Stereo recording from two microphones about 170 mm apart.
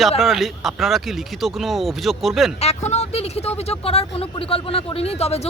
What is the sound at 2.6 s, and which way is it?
Speech, 40° left (ahead or behind).